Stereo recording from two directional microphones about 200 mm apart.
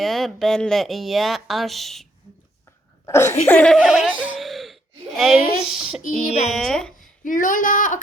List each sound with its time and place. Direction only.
0.0 s speech: centre (ahead or behind)
3.1 s speech: 10° left (ahead or behind)
7.3 s speech: 40° left (ahead or behind)